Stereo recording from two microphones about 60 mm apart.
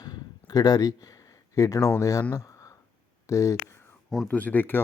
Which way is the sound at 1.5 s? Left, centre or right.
Left.